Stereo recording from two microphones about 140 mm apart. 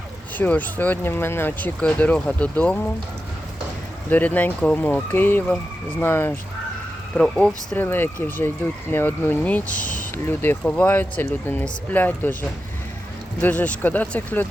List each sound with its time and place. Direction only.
0.3 s speech: 10° left (ahead or behind)
4.1 s speech: 10° left (ahead or behind)
7.2 s speech: 5° left (ahead or behind)
9.8 s a sound: 70° left (ahead or behind)
10.2 s speech: 15° left (ahead or behind)
13.4 s speech: 10° left (ahead or behind)